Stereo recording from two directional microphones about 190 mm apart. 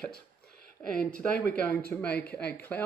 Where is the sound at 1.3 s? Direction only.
55° left (ahead or behind).